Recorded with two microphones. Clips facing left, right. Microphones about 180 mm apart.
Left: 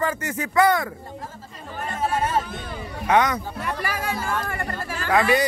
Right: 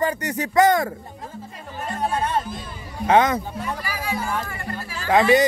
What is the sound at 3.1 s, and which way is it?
Speech, 25° right (ahead or behind).